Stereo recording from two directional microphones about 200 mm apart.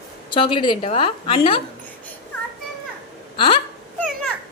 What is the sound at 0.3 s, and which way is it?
A woman's voice, 25° left (ahead or behind).